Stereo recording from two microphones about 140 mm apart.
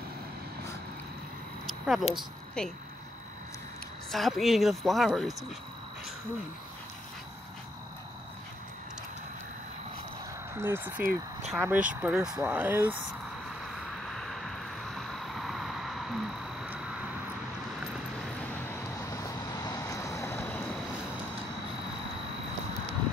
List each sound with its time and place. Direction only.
1.7 s a sound: centre (ahead or behind)
2.1 s a woman's voice: 5° left (ahead or behind)
4.1 s speech: centre (ahead or behind)
10.6 s speech: 15° right (ahead or behind)
13.7 s vehicle: centre (ahead or behind)
18.5 s vehicle: 20° left (ahead or behind)